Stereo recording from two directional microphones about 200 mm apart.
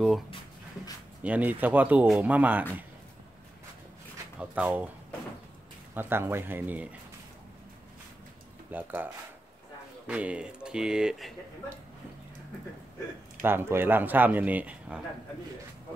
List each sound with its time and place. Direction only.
1.2 s speech: 10° right (ahead or behind)
4.4 s speech: 5° right (ahead or behind)
5.9 s speech: 10° right (ahead or behind)
8.6 s speech: 10° right (ahead or behind)
13.4 s speech: 10° right (ahead or behind)